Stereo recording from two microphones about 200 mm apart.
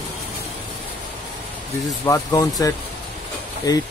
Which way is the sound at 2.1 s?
15° left (ahead or behind).